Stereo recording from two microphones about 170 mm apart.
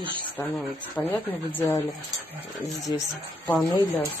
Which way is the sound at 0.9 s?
10° left (ahead or behind).